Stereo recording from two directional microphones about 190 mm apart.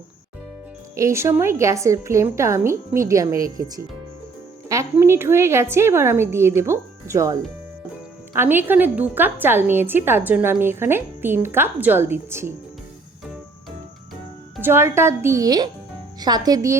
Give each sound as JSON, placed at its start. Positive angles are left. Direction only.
{"t": 0.9, "sound": "a woman's voice", "side_deg": -15}
{"t": 4.7, "sound": "a woman's voice", "side_deg": -15}
{"t": 8.4, "sound": "a woman's voice", "side_deg": -10}
{"t": 14.6, "sound": "a woman's voice", "side_deg": -10}